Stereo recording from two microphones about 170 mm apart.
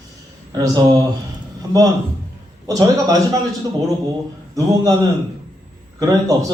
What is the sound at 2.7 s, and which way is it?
Speech, 20° right (ahead or behind).